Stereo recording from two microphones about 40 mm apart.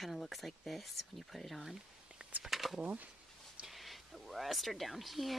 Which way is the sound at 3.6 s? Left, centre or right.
Centre.